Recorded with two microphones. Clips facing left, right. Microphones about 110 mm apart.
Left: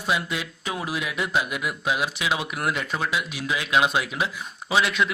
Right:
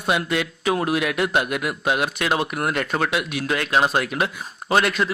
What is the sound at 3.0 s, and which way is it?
Speech, 65° right (ahead or behind).